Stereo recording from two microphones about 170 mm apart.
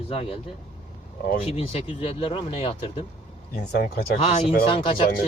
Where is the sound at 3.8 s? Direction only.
60° left (ahead or behind).